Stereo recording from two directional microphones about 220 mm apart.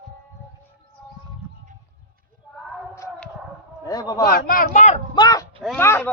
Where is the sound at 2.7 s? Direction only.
10° left (ahead or behind).